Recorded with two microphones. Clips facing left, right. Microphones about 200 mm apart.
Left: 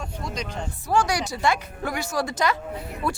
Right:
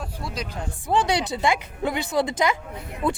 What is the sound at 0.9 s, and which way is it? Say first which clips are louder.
A woman's voice: right 1 dB; 20° right (ahead or behind).